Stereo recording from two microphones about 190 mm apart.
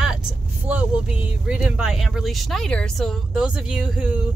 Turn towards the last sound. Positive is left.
turn(degrees=-5)  # may be behind; listen again after turning